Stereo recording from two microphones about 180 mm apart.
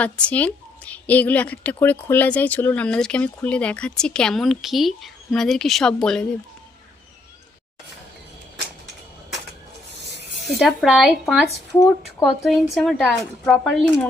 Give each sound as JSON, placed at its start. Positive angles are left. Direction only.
{"t": 0.0, "sound": "a woman's voice", "side_deg": 5}
{"t": 10.4, "sound": "speech", "side_deg": 5}